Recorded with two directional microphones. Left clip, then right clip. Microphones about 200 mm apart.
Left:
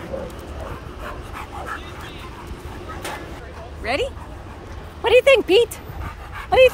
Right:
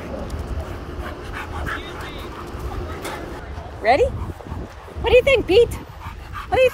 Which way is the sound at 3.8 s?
Centre (ahead or behind).